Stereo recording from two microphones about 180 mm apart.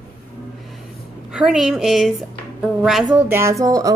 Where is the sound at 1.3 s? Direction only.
5° right (ahead or behind).